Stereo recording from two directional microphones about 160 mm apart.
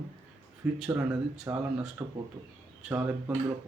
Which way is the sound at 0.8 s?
10° right (ahead or behind).